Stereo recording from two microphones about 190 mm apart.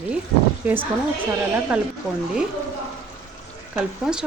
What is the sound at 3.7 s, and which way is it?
Speech, 5° right (ahead or behind).